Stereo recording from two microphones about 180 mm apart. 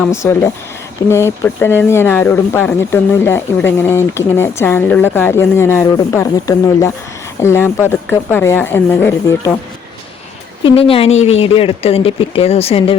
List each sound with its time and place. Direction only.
0.1 s speech: 15° left (ahead or behind)
10.6 s speech: 30° left (ahead or behind)